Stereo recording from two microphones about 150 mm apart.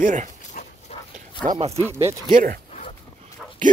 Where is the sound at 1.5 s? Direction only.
45° right (ahead or behind).